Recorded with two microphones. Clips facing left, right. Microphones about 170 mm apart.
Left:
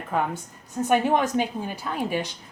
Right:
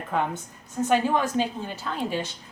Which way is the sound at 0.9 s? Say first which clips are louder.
Left 2 dB; 15° left (ahead or behind).